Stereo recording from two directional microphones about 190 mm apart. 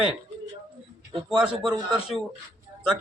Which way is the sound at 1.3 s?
Centre (ahead or behind).